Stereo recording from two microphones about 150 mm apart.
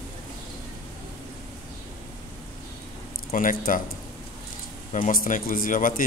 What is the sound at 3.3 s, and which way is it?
Speech, 65° left (ahead or behind).